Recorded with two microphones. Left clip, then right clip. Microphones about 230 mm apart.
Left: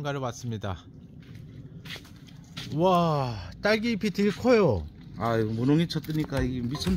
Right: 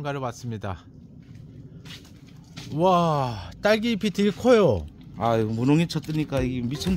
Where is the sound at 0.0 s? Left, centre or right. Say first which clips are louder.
Right 2 dB; centre.